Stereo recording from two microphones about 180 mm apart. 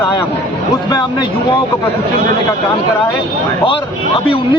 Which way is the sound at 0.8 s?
20° left (ahead or behind).